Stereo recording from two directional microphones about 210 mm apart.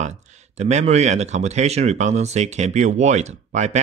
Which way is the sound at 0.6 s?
30° right (ahead or behind).